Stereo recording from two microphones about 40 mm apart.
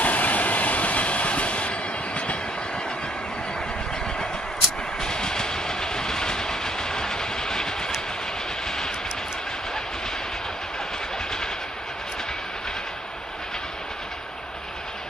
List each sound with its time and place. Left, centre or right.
0.0 s train: left
5.0 s train: centre
8.6 s vehicle: centre